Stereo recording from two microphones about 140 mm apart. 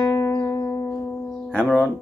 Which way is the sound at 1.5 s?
5° left (ahead or behind).